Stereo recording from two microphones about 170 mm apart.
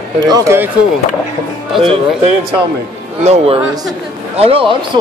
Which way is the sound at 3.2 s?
40° right (ahead or behind).